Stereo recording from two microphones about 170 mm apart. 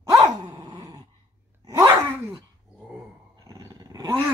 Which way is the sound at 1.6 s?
20° right (ahead or behind).